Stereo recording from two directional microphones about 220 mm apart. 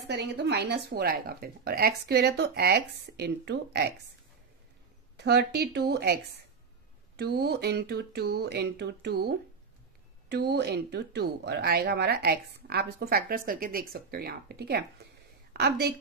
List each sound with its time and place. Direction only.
0.0 s speech: 50° right (ahead or behind)
5.1 s a woman's voice: 50° right (ahead or behind)